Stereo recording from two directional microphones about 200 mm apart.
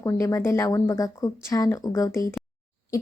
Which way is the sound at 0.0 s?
15° left (ahead or behind).